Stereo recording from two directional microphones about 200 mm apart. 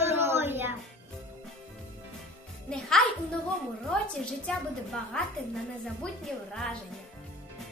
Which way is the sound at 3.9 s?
5° left (ahead or behind).